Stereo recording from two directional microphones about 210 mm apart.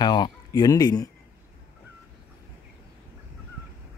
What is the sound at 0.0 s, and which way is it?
Speech, 20° left (ahead or behind).